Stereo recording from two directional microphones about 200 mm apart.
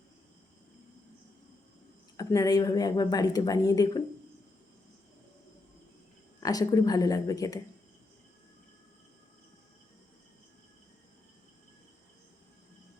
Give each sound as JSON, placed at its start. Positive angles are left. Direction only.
{"t": 2.1, "sound": "a woman's voice", "side_deg": 15}
{"t": 6.4, "sound": "a woman's voice", "side_deg": 20}